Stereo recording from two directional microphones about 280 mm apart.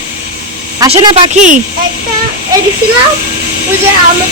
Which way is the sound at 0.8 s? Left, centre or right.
Right.